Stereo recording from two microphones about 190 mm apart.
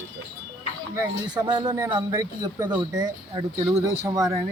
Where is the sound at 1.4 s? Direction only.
20° right (ahead or behind).